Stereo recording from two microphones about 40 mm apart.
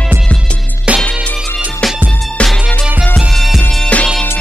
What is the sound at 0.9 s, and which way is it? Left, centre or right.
Music, right.